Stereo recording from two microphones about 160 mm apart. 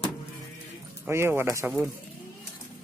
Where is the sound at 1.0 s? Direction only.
15° right (ahead or behind).